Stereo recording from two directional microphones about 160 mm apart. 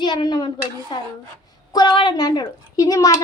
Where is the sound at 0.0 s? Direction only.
25° left (ahead or behind).